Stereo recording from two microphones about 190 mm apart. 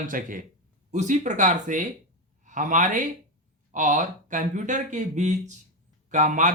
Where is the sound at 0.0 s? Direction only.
45° right (ahead or behind).